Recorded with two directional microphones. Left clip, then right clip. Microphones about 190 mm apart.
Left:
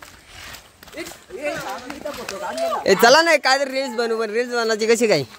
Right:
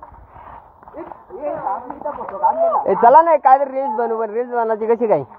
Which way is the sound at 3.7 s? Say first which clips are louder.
Right 3 dB; 20° left (ahead or behind).